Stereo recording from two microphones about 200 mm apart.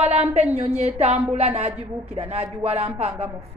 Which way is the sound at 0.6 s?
30° right (ahead or behind).